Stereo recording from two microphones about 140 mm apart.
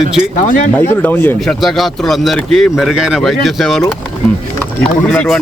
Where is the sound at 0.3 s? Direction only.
65° left (ahead or behind).